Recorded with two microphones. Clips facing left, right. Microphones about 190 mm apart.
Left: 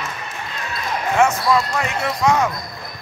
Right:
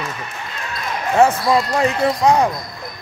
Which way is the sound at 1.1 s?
30° right (ahead or behind).